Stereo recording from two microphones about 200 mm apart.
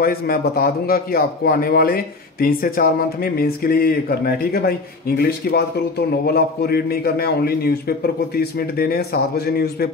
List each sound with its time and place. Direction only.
0.0 s a man's voice: 50° left (ahead or behind)